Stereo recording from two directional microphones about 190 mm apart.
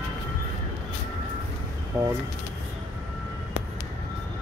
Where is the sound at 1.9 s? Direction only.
5° right (ahead or behind).